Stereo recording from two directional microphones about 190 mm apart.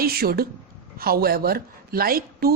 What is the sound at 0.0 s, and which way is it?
Speech, 55° right (ahead or behind).